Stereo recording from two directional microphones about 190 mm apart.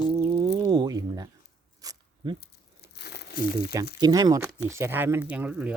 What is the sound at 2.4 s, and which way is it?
Crumpling, 60° left (ahead or behind).